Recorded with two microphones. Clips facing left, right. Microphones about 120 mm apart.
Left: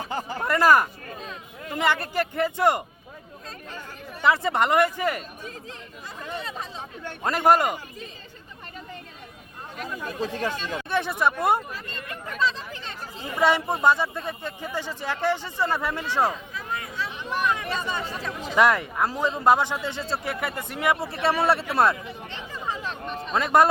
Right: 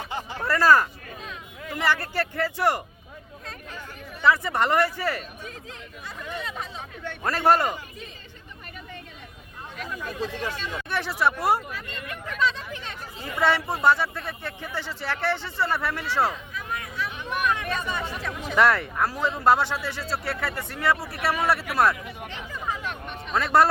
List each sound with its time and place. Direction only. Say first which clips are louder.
0.0 s a sound: left 3 dB; 40° left (ahead or behind)
0.4 s speech: even; 15° left (ahead or behind)
4.2 s speech: even; 20° left (ahead or behind)
6.7 s speech: even; 40° left (ahead or behind)
7.2 s speech: left 1 dB; 20° left (ahead or behind)
9.7 s speech: left 1 dB; 40° left (ahead or behind)
10.8 s speech: left 1 dB; 20° left (ahead or behind)
11.7 s hubbub: even; 35° left (ahead or behind)
13.4 s speech: left 1 dB; 15° left (ahead or behind)
16.6 s a sound: even; 30° left (ahead or behind)
18.5 s speech: left 1 dB; 15° left (ahead or behind)
22.3 s a sound: even; 30° left (ahead or behind)
23.3 s speech: left 1 dB; 20° left (ahead or behind)